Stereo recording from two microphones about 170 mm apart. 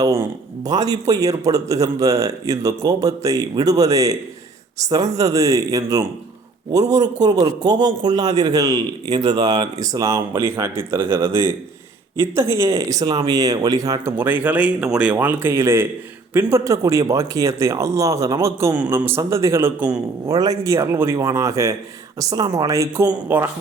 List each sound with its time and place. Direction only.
0.0 s speech: 20° right (ahead or behind)